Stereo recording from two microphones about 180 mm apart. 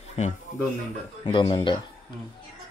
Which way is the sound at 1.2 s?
30° left (ahead or behind).